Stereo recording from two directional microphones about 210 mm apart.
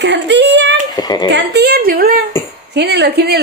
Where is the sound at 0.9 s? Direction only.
20° left (ahead or behind).